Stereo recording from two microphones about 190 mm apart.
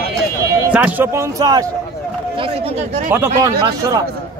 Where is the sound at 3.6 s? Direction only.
15° right (ahead or behind).